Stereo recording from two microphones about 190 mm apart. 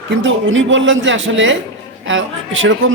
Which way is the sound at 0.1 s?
80° right.